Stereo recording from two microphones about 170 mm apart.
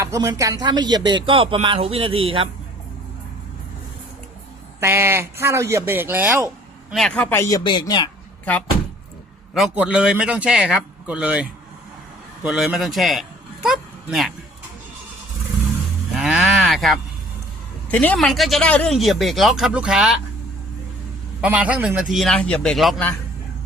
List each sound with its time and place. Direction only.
0.0 s speech: 20° right (ahead or behind)
4.8 s speech: 15° right (ahead or behind)
6.9 s speech: 5° left (ahead or behind)
7.6 s speech: 25° left (ahead or behind)
9.6 s a man's voice: 5° right (ahead or behind)
16.1 s livestock: 5° right (ahead or behind)
17.9 s speech: 10° left (ahead or behind)
21.4 s speech: 10° right (ahead or behind)